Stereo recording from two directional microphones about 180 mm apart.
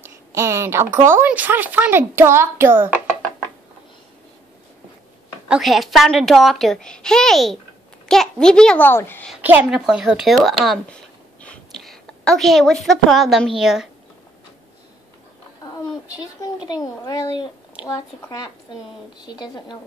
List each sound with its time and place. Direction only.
0.0 s speech: 15° right (ahead or behind)
5.5 s a child's voice: centre (ahead or behind)
9.3 s speech: 10° right (ahead or behind)
15.6 s a woman's voice: 20° left (ahead or behind)